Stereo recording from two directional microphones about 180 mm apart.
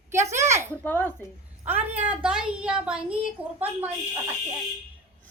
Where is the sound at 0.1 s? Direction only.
15° right (ahead or behind).